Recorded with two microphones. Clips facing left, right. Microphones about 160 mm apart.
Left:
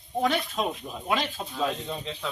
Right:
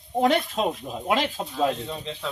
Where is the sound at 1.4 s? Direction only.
30° right (ahead or behind).